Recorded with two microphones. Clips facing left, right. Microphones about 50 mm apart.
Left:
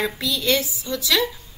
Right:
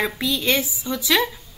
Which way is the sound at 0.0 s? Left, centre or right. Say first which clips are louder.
Right 1 dB; right.